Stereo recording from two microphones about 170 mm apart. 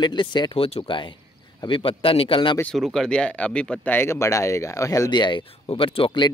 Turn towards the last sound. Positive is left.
turn(degrees=25)  # may be behind; listen again after turning